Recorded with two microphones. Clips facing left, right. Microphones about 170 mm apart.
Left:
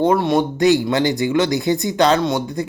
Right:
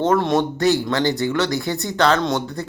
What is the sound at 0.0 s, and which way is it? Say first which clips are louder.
Speech: left 2 dB; 10° left (ahead or behind).